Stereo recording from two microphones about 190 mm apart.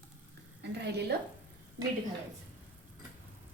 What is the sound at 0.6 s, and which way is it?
Speech, 60° right (ahead or behind).